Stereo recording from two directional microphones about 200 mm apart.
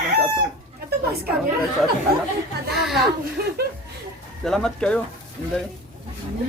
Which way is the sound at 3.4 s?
50° right (ahead or behind).